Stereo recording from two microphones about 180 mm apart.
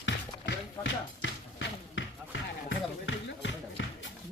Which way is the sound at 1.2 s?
90° left.